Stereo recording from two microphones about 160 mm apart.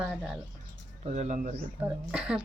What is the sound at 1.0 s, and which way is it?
Speech, 45° right (ahead or behind).